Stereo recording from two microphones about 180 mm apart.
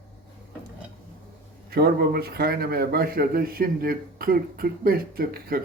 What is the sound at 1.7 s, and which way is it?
A man's voice, 60° right (ahead or behind).